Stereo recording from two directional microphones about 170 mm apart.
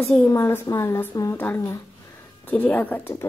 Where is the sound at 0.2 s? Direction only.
15° left (ahead or behind).